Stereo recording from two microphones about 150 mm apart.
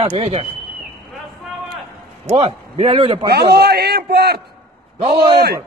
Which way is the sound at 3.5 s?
90° right.